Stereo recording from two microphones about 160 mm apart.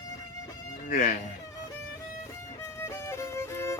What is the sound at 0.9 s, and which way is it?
Speech, 55° left (ahead or behind).